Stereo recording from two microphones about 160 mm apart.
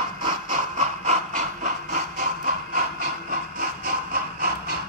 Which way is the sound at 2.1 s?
60° right (ahead or behind).